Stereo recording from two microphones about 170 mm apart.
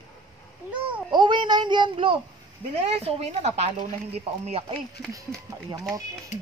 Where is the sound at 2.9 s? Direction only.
35° right (ahead or behind).